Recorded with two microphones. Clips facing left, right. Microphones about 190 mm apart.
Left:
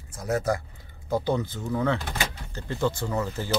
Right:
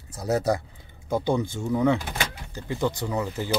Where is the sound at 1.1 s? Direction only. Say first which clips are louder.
Right 1 dB; 15° right (ahead or behind).